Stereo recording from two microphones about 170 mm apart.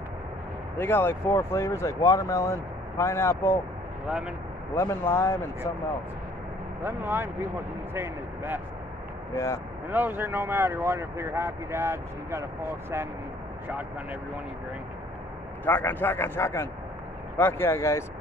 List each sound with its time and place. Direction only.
0.7 s speech: 15° left (ahead or behind)
4.7 s speech: 15° left (ahead or behind)
6.8 s speech: 10° right (ahead or behind)
9.3 s speech: 15° left (ahead or behind)
9.8 s speech: 10° right (ahead or behind)
15.6 s speech: 10° left (ahead or behind)